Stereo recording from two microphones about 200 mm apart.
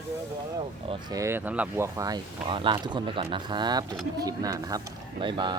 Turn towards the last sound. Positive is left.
turn(degrees=-25)  # may be behind; listen again after turning